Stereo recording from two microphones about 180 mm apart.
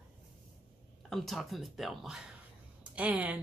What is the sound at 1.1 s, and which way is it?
A woman's voice, centre (ahead or behind).